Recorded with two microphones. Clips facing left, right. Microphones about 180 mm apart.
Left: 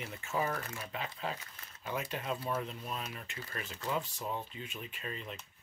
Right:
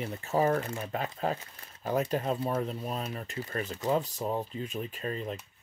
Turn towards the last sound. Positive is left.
turn(degrees=-40)  # may be behind; listen again after turning